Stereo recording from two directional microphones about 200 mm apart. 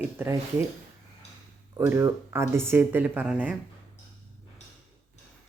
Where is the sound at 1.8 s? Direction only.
10° right (ahead or behind).